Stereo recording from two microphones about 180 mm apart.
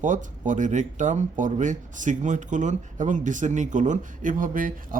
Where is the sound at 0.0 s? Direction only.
45° right (ahead or behind).